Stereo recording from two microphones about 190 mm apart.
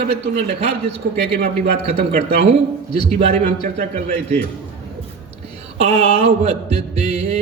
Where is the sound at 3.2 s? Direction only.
35° right (ahead or behind).